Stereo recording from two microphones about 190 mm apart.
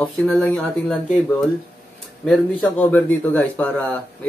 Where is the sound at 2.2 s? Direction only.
5° left (ahead or behind).